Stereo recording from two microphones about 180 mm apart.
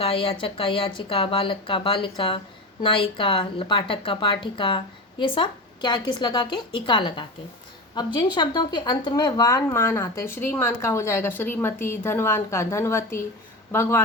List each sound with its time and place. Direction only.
0.0 s speech: 30° left (ahead or behind); by 14.0 s 15° left (ahead or behind)